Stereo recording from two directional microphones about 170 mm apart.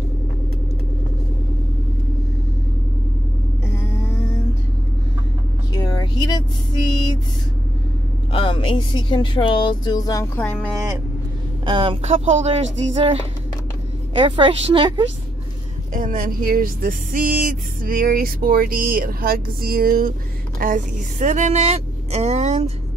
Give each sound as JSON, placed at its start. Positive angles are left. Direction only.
{"t": 5.7, "sound": "vehicle", "side_deg": 25}
{"t": 8.3, "sound": "speech", "side_deg": 30}
{"t": 11.6, "sound": "a woman's voice", "side_deg": -30}
{"t": 15.9, "sound": "speech", "side_deg": -55}